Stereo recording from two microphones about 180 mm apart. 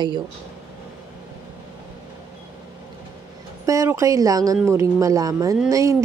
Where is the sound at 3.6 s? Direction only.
20° right (ahead or behind).